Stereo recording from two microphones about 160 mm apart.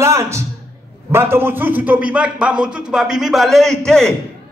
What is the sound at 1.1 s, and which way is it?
A man's voice, 15° right (ahead or behind).